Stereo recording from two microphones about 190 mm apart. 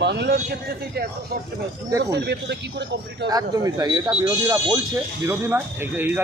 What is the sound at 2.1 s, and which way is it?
A man's voice, 60° right (ahead or behind).